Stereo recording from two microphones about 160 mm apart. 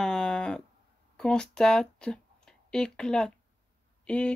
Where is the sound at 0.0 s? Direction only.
5° left (ahead or behind).